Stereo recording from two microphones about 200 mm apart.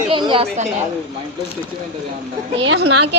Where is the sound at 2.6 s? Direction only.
65° right (ahead or behind).